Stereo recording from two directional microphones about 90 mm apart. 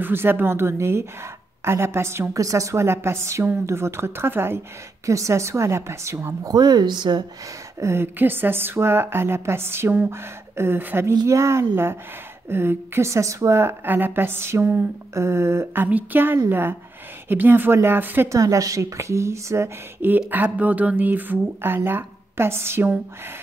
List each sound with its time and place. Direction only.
0.0 s a woman's voice: 25° right (ahead or behind)
6.4 s speech: 50° right (ahead or behind)
7.8 s a woman's voice: 25° right (ahead or behind)
18.3 s a woman's voice: 40° right (ahead or behind)